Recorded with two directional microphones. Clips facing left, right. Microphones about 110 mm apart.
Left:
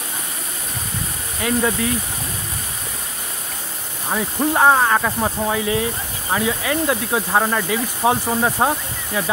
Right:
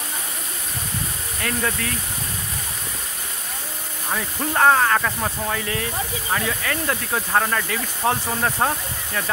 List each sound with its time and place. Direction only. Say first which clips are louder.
1.4 s speech: left 6 dB; 15° left (ahead or behind)
4.1 s speech: left 5 dB; 15° left (ahead or behind)